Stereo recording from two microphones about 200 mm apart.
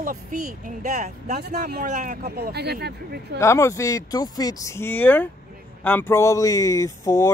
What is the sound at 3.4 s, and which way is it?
Speech, 15° left (ahead or behind).